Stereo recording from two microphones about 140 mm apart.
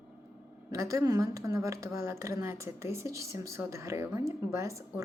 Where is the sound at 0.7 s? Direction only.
20° right (ahead or behind).